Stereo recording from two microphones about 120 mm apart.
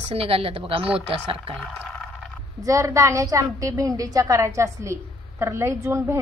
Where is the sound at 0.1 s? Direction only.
55° right (ahead or behind).